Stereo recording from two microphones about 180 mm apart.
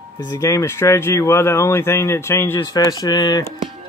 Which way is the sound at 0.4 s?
15° left (ahead or behind).